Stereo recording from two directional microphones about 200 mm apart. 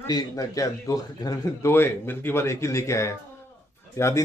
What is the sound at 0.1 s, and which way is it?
Speech, 15° left (ahead or behind).